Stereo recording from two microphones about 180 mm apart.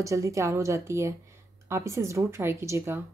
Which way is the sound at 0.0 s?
15° right (ahead or behind).